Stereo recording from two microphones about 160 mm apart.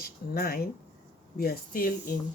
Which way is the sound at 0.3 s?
70° left (ahead or behind).